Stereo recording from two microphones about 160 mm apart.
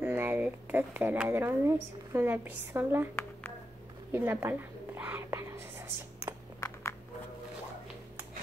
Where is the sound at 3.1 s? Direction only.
15° left (ahead or behind).